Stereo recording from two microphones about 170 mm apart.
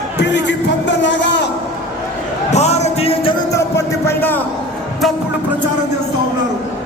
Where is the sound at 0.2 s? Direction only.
90° left.